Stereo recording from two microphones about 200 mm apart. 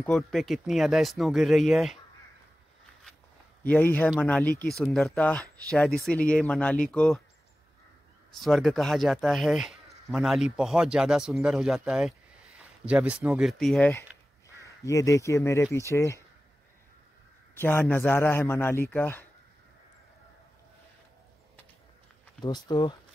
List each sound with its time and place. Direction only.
0.0 s speech: centre (ahead or behind)
3.6 s a man's voice: 10° left (ahead or behind)
8.4 s a man's voice: centre (ahead or behind)
17.6 s a man's voice: 10° left (ahead or behind)
22.4 s speech: 20° left (ahead or behind)